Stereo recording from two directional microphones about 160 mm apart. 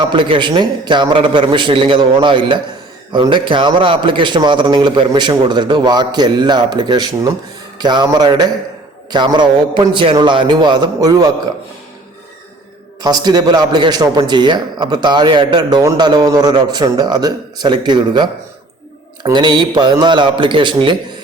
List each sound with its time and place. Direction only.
0.0 s a man's voice: 30° right (ahead or behind)
13.0 s a man's voice: 25° right (ahead or behind)